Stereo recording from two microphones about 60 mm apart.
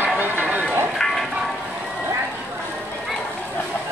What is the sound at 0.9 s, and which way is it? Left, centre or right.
Train, centre.